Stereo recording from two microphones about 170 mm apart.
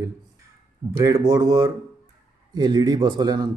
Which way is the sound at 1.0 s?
20° right (ahead or behind).